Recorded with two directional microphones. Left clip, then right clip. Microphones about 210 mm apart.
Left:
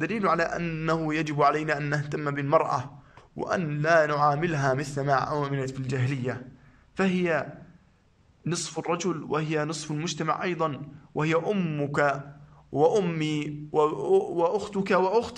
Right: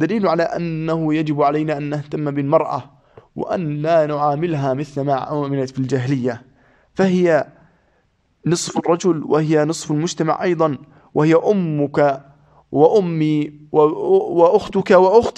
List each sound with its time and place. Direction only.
0.0 s a man's voice: 25° right (ahead or behind)
8.5 s a man's voice: 35° right (ahead or behind)